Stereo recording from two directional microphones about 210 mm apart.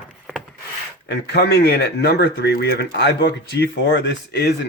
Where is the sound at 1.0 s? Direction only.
55° left (ahead or behind).